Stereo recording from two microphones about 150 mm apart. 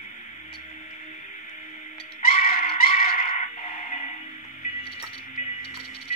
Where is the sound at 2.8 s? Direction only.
75° left (ahead or behind).